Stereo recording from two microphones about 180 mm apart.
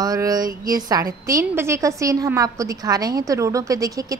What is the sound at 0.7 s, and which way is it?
A woman's voice, 20° right (ahead or behind).